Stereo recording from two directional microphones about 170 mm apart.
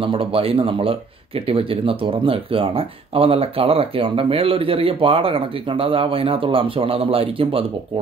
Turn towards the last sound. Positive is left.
turn(degrees=-35)  # may be behind; listen again after turning